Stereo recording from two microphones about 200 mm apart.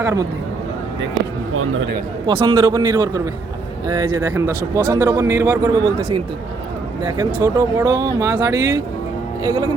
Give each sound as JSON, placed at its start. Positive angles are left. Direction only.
{"t": 0.0, "sound": "speech", "side_deg": -15}
{"t": 1.5, "sound": "a man's voice", "side_deg": -90}
{"t": 2.2, "sound": "a man's voice", "side_deg": -25}
{"t": 7.3, "sound": "a man's voice", "side_deg": -15}